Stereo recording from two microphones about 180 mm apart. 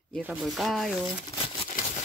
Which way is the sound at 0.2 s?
5° right (ahead or behind).